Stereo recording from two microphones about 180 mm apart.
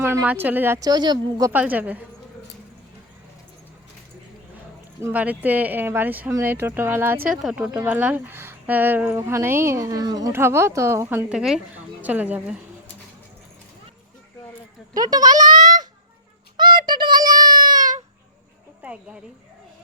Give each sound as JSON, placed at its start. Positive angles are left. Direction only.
{"t": 0.0, "sound": "speech", "side_deg": -15}
{"t": 1.5, "sound": "speech", "side_deg": -10}
{"t": 5.0, "sound": "speech", "side_deg": -10}
{"t": 14.9, "sound": "a child's voice", "side_deg": -20}
{"t": 16.6, "sound": "child singing", "side_deg": -25}
{"t": 18.8, "sound": "a woman's voice", "side_deg": -5}